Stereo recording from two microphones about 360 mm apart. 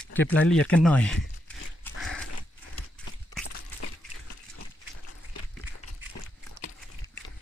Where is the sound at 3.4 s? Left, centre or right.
Left.